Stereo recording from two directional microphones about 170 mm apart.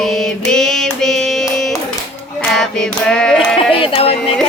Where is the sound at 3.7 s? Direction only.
35° left (ahead or behind).